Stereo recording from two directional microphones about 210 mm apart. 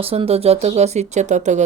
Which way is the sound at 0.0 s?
25° right (ahead or behind).